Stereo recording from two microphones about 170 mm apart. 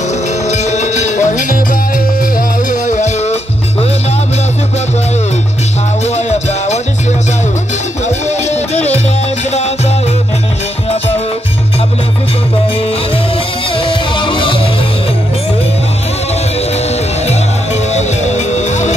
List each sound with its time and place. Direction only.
0.5 s music: 45° left (ahead or behind)
6.0 s music: 40° left (ahead or behind)
8.3 s music: 40° left (ahead or behind)
13.7 s music: 30° left (ahead or behind)
17.9 s music: 45° left (ahead or behind)